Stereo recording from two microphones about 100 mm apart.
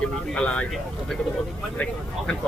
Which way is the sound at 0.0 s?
10° left (ahead or behind).